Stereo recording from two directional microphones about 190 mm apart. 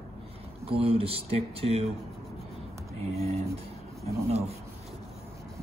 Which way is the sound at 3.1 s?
30° right (ahead or behind).